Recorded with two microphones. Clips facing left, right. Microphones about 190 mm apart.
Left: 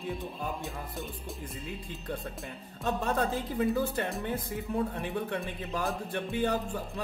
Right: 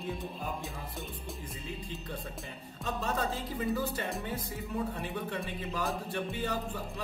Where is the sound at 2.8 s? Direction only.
55° left (ahead or behind).